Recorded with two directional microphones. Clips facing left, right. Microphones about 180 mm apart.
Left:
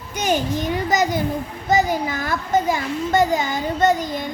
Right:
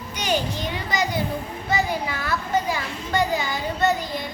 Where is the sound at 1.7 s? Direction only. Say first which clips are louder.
Left 6 dB; 45° left (ahead or behind).